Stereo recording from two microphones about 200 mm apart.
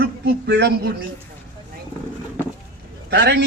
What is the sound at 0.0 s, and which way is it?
Speech, 55° right (ahead or behind).